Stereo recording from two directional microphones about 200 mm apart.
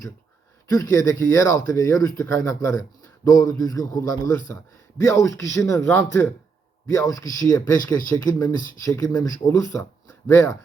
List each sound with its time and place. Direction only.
0.7 s speech: 15° left (ahead or behind)